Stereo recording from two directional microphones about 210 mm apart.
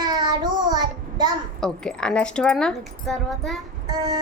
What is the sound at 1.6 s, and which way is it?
A woman's voice, 5° left (ahead or behind).